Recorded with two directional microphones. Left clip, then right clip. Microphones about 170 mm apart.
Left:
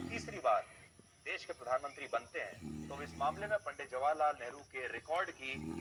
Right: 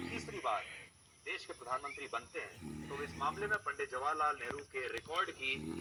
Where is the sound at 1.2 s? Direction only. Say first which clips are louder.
Left 2 dB; 35° left (ahead or behind).